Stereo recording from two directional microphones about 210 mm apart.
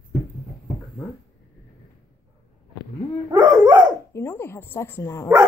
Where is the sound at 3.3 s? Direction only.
20° right (ahead or behind).